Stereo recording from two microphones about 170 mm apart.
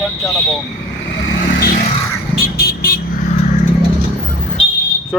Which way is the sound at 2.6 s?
60° left (ahead or behind).